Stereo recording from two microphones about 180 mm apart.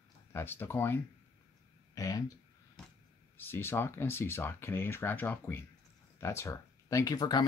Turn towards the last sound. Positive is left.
turn(degrees=20)  # may be behind; listen again after turning